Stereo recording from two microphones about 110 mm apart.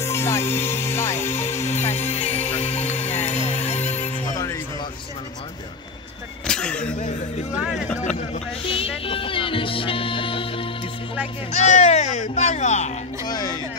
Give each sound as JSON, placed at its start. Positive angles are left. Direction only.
{"t": 0.0, "sound": "music", "side_deg": 25}
{"t": 1.7, "sound": "music", "side_deg": 75}
{"t": 3.8, "sound": "music", "side_deg": 15}
{"t": 6.4, "sound": "a sound", "side_deg": 5}
{"t": 8.6, "sound": "music", "side_deg": 55}
{"t": 11.5, "sound": "music", "side_deg": 90}
{"t": 13.2, "sound": "a sound", "side_deg": 40}